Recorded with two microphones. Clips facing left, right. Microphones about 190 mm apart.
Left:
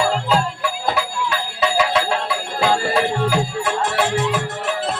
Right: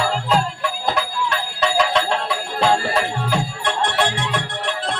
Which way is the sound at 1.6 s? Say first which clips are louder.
Even; 5° left (ahead or behind).